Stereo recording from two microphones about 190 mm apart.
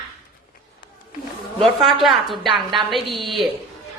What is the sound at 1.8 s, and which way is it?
A woman's voice, centre (ahead or behind).